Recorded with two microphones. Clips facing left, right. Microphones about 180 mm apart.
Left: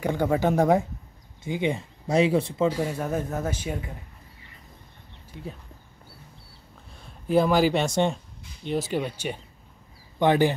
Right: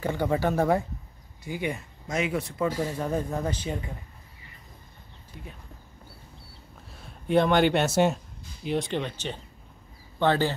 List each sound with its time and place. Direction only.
0.0 s speech: 15° left (ahead or behind)
2.8 s speech: 5° left (ahead or behind)
6.9 s speech: centre (ahead or behind); by 10.5 s 15° left (ahead or behind)